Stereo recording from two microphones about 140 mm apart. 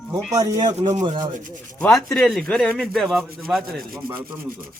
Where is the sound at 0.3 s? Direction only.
25° right (ahead or behind).